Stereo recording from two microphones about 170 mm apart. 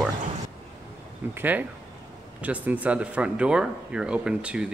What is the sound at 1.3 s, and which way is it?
Speech, 10° right (ahead or behind).